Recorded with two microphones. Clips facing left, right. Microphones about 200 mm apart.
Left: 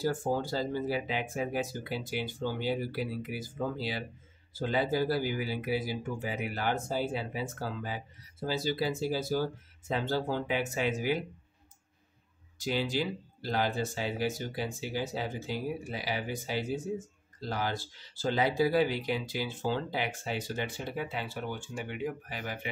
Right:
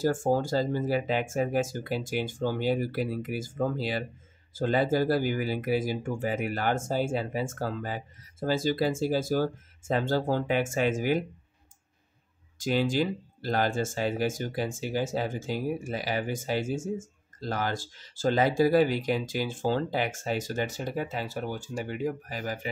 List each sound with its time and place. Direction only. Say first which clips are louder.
0.0 s speech: right 5 dB; 45° right (ahead or behind)
12.5 s speech: right 5 dB; 50° right (ahead or behind)